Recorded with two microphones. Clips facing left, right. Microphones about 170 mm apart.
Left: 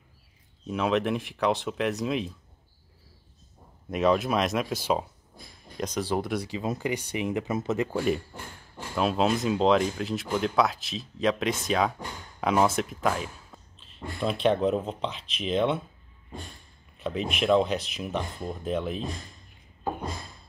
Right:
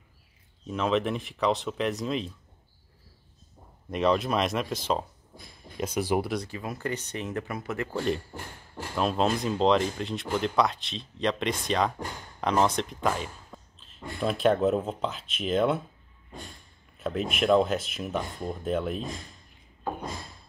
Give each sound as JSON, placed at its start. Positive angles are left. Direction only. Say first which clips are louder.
{"t": 0.7, "sound": "speech", "louder": "left 1 dB", "side_deg": 5}
{"t": 3.9, "sound": "speech", "louder": "left 1 dB", "side_deg": 5}
{"t": 5.8, "sound": "speech", "louder": "right 1 dB", "side_deg": -10}
{"t": 6.3, "sound": "speech", "louder": "left 3 dB", "side_deg": 10}
{"t": 7.9, "sound": "speech", "louder": "left 2 dB", "side_deg": 5}
{"t": 17.0, "sound": "speech", "louder": "right 1 dB", "side_deg": 0}